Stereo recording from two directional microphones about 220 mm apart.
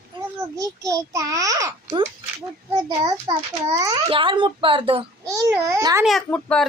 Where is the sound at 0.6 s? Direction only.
15° right (ahead or behind).